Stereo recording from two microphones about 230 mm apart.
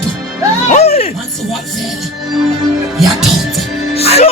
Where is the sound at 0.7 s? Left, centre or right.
Left.